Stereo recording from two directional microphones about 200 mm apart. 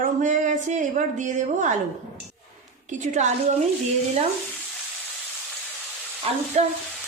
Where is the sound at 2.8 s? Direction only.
40° right (ahead or behind).